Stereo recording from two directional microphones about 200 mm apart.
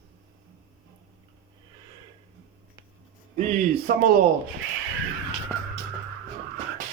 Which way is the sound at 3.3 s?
40° right (ahead or behind).